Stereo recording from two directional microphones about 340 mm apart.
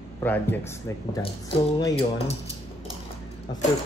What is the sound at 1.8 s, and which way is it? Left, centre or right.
Speech, centre.